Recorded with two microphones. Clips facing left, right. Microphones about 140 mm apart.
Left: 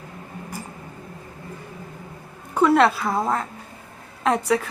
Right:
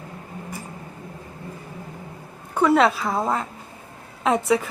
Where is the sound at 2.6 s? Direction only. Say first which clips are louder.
Left 1 dB; centre (ahead or behind).